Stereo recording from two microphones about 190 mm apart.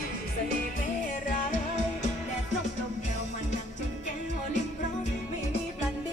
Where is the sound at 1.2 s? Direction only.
45° left (ahead or behind).